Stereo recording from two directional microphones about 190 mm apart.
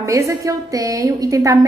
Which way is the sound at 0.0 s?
15° right (ahead or behind).